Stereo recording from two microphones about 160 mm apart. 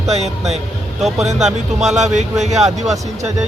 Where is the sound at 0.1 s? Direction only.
45° right (ahead or behind).